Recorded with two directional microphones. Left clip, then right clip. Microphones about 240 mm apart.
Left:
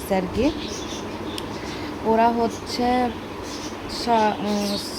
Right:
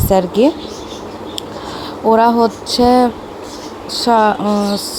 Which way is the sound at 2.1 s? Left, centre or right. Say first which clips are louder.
Right 8 dB; right.